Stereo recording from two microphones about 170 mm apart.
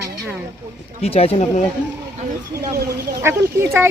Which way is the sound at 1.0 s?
35° left (ahead or behind).